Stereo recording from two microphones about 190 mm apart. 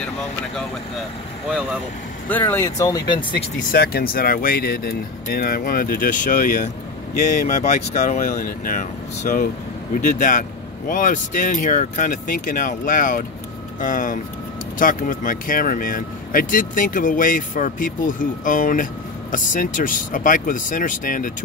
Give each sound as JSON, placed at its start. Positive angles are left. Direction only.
{"t": 2.2, "sound": "speech", "side_deg": 10}
{"t": 3.7, "sound": "speech", "side_deg": 55}